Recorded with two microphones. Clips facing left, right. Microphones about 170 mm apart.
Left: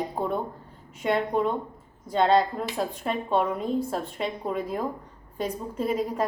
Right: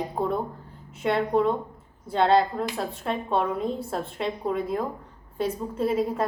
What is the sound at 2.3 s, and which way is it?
A woman's voice, centre (ahead or behind).